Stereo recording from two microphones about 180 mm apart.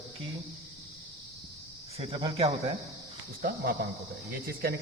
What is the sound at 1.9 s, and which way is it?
Speech, 30° right (ahead or behind).